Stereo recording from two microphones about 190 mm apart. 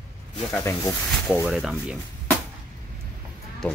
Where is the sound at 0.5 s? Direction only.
15° left (ahead or behind).